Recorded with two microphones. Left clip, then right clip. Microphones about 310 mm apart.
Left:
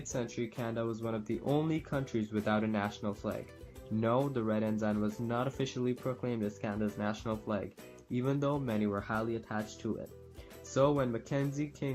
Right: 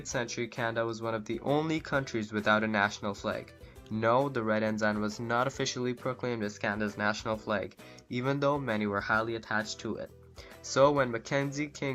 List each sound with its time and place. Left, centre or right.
0.0 s speech: right